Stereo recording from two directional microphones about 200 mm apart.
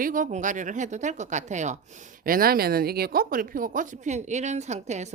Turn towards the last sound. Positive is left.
turn(degrees=-35)  # may be behind; listen again after turning